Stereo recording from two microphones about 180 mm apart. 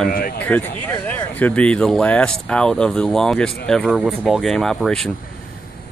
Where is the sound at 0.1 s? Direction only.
55° left (ahead or behind).